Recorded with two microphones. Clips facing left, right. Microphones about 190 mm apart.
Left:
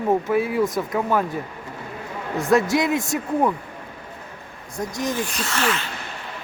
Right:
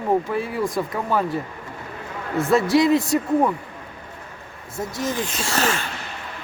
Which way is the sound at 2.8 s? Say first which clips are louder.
Right 5 dB; centre (ahead or behind).